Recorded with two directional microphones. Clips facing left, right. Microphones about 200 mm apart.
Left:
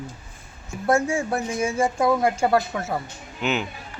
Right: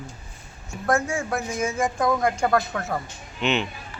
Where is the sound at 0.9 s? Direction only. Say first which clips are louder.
Left 2 dB; 30° left (ahead or behind).